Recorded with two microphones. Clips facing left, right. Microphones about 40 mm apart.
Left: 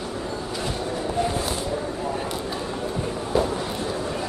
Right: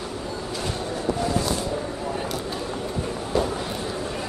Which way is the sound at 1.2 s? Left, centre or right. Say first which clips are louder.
Left 1 dB; left.